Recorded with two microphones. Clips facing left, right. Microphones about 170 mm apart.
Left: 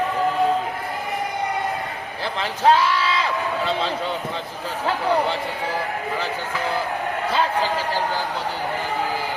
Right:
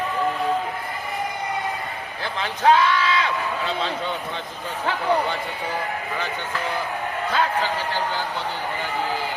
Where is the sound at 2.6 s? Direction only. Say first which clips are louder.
Even; 35° left (ahead or behind).